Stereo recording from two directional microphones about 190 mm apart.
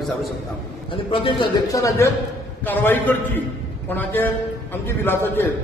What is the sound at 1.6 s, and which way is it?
A man's voice, 15° left (ahead or behind).